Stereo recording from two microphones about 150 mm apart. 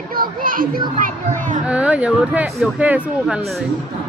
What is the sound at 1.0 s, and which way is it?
Speech, 60° right (ahead or behind).